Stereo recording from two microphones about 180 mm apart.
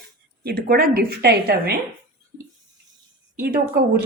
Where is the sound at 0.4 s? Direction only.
55° right (ahead or behind).